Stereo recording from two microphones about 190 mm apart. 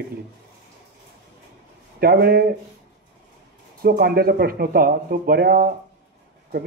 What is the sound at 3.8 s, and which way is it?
Speech, 55° right (ahead or behind).